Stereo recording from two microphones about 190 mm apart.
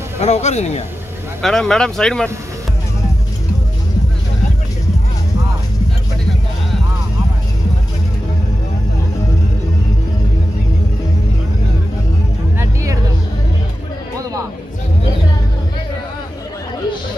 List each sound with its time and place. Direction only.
0.2 s speech: 35° left (ahead or behind)
1.4 s speech: centre (ahead or behind)